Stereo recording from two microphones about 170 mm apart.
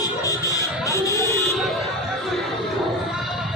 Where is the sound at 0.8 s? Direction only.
20° left (ahead or behind).